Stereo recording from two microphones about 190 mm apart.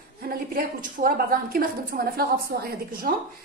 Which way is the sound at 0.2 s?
50° right (ahead or behind).